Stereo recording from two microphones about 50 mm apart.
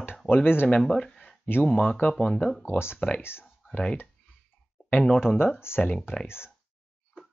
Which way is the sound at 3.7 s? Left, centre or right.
Centre.